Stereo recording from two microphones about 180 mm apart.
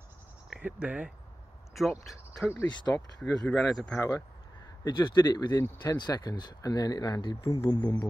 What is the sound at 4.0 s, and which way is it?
Speech, 15° left (ahead or behind).